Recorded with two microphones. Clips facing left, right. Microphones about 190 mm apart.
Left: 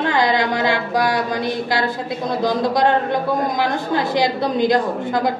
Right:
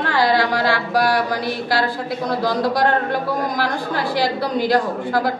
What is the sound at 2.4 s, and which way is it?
A woman's voice, 20° left (ahead or behind).